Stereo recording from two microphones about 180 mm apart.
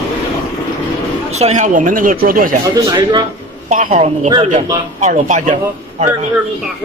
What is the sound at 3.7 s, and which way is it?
A man's voice, 40° right (ahead or behind).